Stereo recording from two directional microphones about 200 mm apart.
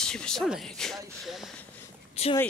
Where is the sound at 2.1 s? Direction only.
30° left (ahead or behind).